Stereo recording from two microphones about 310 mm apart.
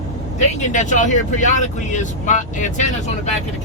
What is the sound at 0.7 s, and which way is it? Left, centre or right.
Speech, left.